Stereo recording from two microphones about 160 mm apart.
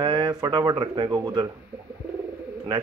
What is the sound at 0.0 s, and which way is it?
Speech, 30° right (ahead or behind).